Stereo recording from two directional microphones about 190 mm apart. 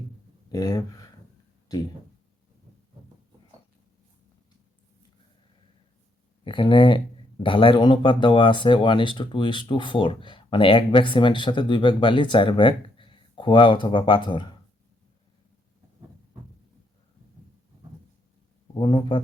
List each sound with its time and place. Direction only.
0.5 s speech: 20° left (ahead or behind)
6.4 s speech: 25° left (ahead or behind)
18.8 s speech: 25° left (ahead or behind)